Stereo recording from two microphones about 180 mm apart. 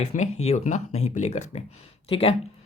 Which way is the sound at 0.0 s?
40° left (ahead or behind).